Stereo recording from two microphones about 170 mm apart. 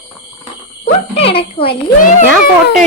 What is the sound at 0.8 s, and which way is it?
Speech, 35° left (ahead or behind).